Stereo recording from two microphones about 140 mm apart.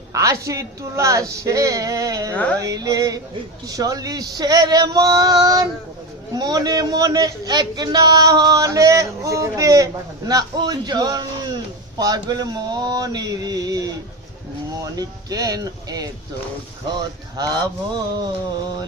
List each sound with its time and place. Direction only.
0.1 s a man's voice: 25° right (ahead or behind)
2.3 s a sound: 10° left (ahead or behind)
2.6 s a man's voice: 25° right (ahead or behind)
14.9 s a man's voice: 25° right (ahead or behind)